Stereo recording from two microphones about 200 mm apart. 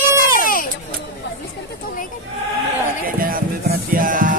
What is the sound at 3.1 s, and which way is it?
A man's voice, 45° right (ahead or behind).